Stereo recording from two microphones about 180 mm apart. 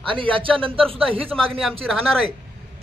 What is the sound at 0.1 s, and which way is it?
Speech, 30° right (ahead or behind).